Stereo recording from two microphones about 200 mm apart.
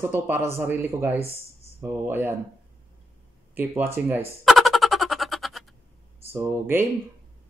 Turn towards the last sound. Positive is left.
turn(degrees=-10)  # may be behind; listen again after turning